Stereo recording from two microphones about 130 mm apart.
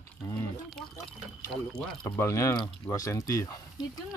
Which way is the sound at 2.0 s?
20° left (ahead or behind).